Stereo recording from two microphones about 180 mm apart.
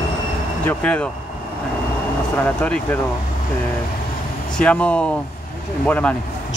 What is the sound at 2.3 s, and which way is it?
Speech, 10° left (ahead or behind).